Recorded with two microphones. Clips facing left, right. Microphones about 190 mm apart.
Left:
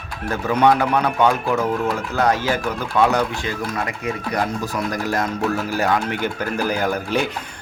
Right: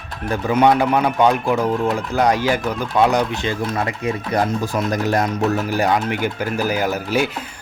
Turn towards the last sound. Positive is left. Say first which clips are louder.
# right 1 dB
turn(degrees=-5)  # may be behind; listen again after turning